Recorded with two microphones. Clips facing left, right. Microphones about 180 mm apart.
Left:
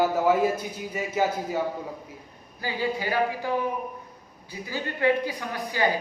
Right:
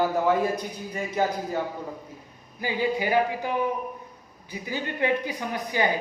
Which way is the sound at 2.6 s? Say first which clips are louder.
Right 2 dB; 20° right (ahead or behind).